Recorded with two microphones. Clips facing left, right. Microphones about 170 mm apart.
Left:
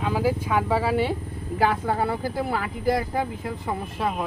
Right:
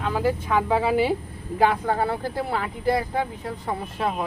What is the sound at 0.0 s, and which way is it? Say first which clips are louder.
Speech: even; 10° left (ahead or behind).